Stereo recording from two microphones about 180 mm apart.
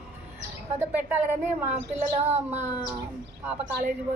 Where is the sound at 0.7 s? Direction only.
10° right (ahead or behind).